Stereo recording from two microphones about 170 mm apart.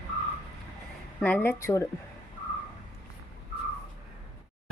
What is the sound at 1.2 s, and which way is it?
Speech, 10° left (ahead or behind).